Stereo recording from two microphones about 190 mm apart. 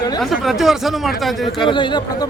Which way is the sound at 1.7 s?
25° left (ahead or behind).